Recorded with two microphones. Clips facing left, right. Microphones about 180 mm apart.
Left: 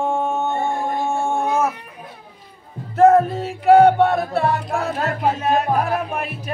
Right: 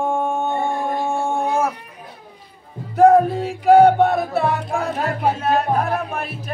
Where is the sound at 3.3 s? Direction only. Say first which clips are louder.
Even; centre (ahead or behind).